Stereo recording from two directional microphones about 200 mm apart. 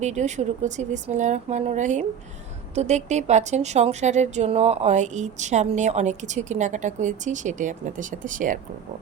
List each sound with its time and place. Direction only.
0.0 s speech: 35° right (ahead or behind)